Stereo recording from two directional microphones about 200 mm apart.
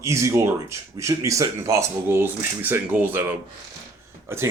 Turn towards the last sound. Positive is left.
turn(degrees=-15)  # may be behind; listen again after turning